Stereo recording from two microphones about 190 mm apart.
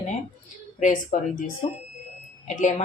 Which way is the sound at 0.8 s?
40° left (ahead or behind).